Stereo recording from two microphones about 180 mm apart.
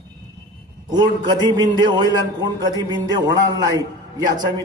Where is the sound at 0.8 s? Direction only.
25° right (ahead or behind).